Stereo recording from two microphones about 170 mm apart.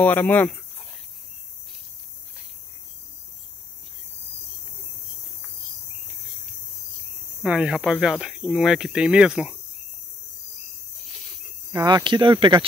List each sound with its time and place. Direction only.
0.0 s speech: 10° left (ahead or behind)
7.4 s speech: 5° right (ahead or behind)
11.7 s speech: 25° right (ahead or behind)